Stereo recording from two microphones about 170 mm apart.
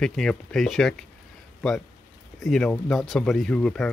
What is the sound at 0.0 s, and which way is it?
Speech, 5° left (ahead or behind).